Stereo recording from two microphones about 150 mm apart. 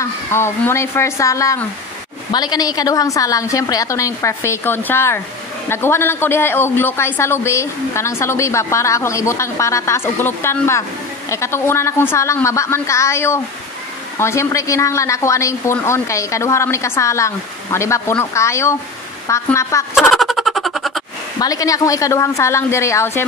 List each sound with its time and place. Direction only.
0.0 s a woman's voice: 15° left (ahead or behind)
20.0 s a sound: centre (ahead or behind)
21.4 s a woman's voice: 25° left (ahead or behind)